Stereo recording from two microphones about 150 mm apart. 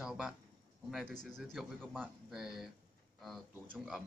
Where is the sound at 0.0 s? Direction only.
5° right (ahead or behind).